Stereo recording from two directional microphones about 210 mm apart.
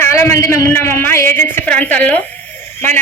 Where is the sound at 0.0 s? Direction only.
15° left (ahead or behind).